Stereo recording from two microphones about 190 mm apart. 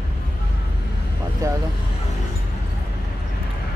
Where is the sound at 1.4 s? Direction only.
15° right (ahead or behind).